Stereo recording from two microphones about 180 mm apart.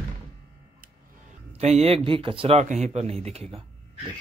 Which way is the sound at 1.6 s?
35° right (ahead or behind).